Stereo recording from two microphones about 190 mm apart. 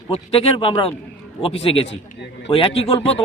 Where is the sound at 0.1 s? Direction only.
30° left (ahead or behind).